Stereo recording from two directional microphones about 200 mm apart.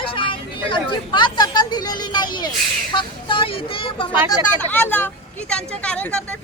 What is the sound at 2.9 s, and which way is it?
Speech, 25° left (ahead or behind).